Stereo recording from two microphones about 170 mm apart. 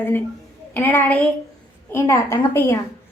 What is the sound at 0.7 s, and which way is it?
A woman's voice, 10° left (ahead or behind).